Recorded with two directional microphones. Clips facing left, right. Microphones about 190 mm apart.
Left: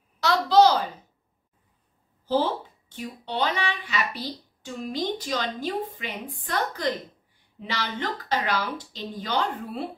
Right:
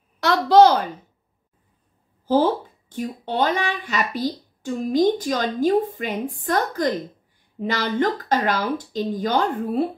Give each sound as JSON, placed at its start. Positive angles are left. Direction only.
{"t": 0.2, "sound": "a woman's voice", "side_deg": -55}
{"t": 2.2, "sound": "speech", "side_deg": -50}